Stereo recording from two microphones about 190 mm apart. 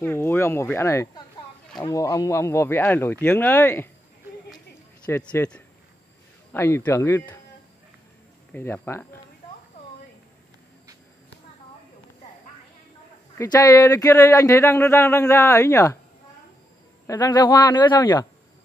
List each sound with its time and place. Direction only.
0.0 s speech: 10° left (ahead or behind)
5.0 s speech: 10° left (ahead or behind)
8.5 s speech: 10° left (ahead or behind)
13.4 s speech: 20° left (ahead or behind)
17.0 s speech: 15° left (ahead or behind)